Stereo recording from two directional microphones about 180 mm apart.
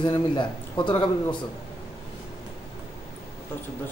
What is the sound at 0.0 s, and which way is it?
A man's voice, 25° left (ahead or behind).